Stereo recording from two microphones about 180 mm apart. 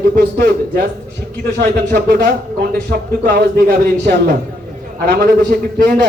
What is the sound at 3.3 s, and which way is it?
A man's voice, 65° right (ahead or behind).